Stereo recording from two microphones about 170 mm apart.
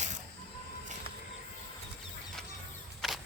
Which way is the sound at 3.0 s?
Centre (ahead or behind).